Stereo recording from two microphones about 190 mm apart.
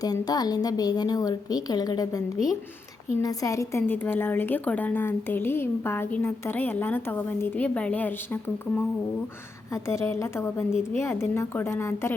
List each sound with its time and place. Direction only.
0.0 s a woman's voice: 20° left (ahead or behind)